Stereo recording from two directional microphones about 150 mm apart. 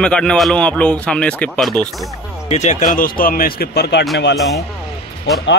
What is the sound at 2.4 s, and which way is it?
Speech, 50° left (ahead or behind).